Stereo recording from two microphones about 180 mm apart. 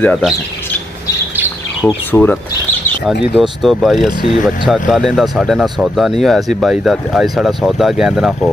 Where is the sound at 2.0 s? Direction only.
10° left (ahead or behind).